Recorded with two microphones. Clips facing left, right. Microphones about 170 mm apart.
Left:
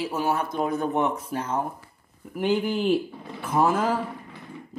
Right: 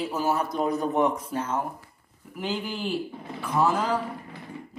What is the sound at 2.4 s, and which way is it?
A man's voice, 60° left (ahead or behind).